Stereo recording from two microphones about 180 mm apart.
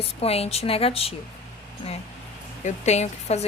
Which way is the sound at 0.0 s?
35° left (ahead or behind).